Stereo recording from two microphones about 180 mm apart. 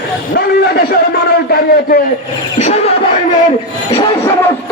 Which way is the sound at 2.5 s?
40° left (ahead or behind).